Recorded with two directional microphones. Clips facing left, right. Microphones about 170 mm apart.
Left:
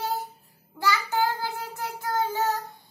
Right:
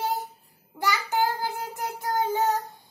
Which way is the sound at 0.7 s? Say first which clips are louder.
Even; 20° right (ahead or behind).